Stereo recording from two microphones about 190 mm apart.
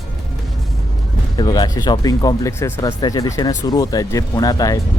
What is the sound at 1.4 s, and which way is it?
Speech, 20° left (ahead or behind).